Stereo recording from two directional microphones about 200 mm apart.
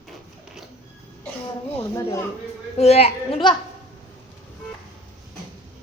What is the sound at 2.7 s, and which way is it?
Speech, 30° left (ahead or behind).